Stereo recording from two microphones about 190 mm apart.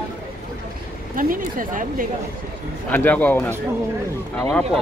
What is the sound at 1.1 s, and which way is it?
Speech, 45° right (ahead or behind).